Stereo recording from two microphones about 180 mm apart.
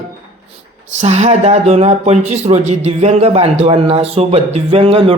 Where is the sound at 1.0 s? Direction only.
40° right (ahead or behind).